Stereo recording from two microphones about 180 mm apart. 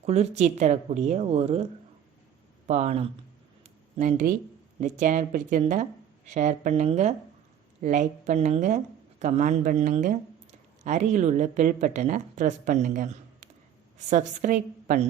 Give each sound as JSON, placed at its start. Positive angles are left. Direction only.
{"t": 0.0, "sound": "speech", "side_deg": -35}
{"t": 2.6, "sound": "speech", "side_deg": -35}
{"t": 3.6, "sound": "a sound", "side_deg": -40}
{"t": 4.9, "sound": "a woman's voice", "side_deg": -45}